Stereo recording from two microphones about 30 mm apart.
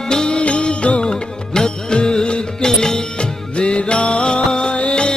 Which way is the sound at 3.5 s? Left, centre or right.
Left.